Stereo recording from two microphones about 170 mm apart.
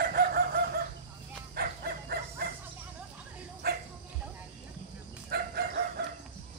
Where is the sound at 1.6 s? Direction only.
65° right (ahead or behind).